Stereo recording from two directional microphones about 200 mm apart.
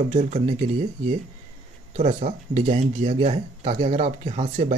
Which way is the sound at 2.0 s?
35° right (ahead or behind).